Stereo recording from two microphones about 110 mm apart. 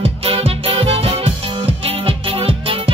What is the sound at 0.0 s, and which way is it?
Music, 60° right (ahead or behind).